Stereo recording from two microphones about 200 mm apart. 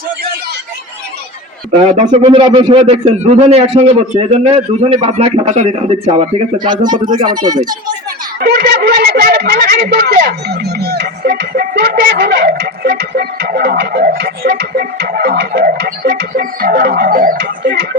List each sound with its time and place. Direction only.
2.0 s a man's voice: 30° right (ahead or behind)
8.4 s speech: 50° right (ahead or behind)